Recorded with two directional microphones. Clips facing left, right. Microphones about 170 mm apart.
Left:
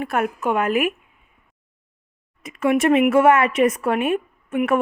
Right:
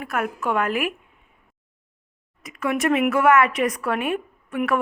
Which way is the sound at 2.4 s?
25° left (ahead or behind).